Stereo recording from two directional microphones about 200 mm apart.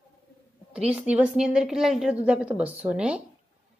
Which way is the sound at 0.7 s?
5° right (ahead or behind).